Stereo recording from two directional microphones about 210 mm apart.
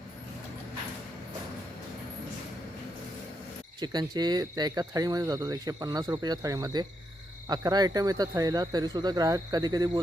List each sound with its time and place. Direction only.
3.8 s speech: 20° right (ahead or behind)